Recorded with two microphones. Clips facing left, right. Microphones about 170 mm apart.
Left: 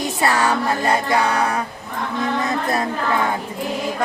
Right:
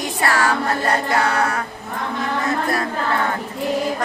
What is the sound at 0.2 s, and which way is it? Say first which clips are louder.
Music: even; 20° left (ahead or behind).